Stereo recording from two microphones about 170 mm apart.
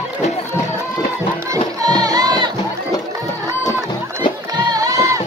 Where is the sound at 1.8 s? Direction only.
20° right (ahead or behind).